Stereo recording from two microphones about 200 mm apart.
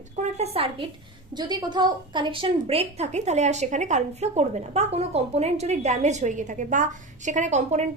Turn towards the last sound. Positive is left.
turn(degrees=-35)  # may be behind; listen again after turning